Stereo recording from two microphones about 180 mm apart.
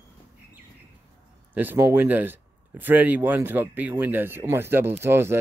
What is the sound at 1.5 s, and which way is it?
Speech, 10° right (ahead or behind).